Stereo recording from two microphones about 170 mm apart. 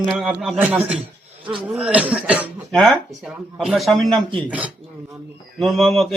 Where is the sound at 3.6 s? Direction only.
Centre (ahead or behind).